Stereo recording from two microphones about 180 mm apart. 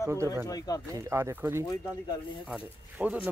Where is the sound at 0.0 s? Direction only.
15° right (ahead or behind).